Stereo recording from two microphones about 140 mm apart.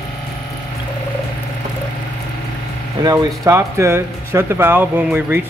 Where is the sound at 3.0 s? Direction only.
30° right (ahead or behind).